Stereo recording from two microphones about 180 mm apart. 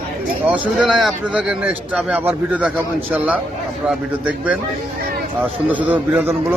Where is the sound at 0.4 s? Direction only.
5° right (ahead or behind).